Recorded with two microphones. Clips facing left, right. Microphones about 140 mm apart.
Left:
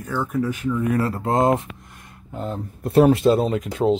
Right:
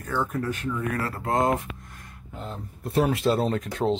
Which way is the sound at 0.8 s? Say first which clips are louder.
Left 7 dB; 25° left (ahead or behind).